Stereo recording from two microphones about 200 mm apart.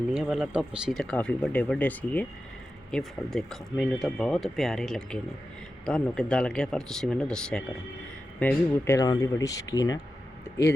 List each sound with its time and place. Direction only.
0.1 s speech: centre (ahead or behind); by 10.0 s 15° left (ahead or behind)